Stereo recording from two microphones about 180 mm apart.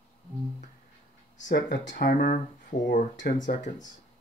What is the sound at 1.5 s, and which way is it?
Speech, 75° left (ahead or behind).